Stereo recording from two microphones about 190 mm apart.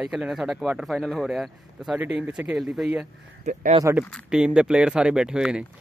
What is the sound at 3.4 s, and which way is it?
Speech, 35° right (ahead or behind).